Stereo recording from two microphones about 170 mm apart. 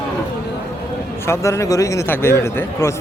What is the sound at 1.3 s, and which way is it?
A man's voice, 15° left (ahead or behind).